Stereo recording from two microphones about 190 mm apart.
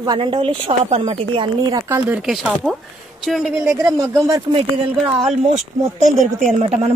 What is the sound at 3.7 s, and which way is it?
Speech, 15° right (ahead or behind).